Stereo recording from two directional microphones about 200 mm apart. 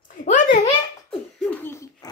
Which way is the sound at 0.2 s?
40° left (ahead or behind).